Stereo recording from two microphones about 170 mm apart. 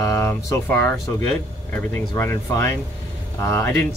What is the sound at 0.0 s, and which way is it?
Speech, 15° left (ahead or behind).